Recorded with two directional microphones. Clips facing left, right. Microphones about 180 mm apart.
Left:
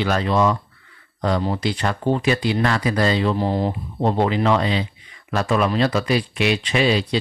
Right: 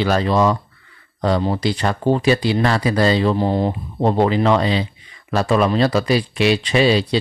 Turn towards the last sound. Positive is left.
turn(degrees=-30)  # may be behind; listen again after turning